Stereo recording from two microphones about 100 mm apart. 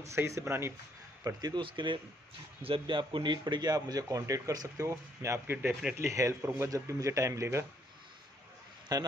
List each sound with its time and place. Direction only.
0.0 s a man's voice: 30° right (ahead or behind)
1.2 s speech: 40° right (ahead or behind)
1.6 s a man's voice: 55° right (ahead or behind); by 7.6 s 30° right (ahead or behind)
8.9 s speech: 40° right (ahead or behind)